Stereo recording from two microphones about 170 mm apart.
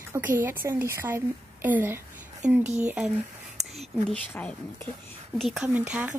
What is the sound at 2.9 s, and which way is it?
Speech, 10° right (ahead or behind).